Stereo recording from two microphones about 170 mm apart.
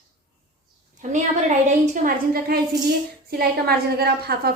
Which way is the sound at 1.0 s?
45° right (ahead or behind).